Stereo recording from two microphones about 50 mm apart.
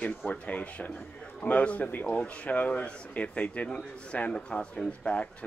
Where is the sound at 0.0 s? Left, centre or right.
Left.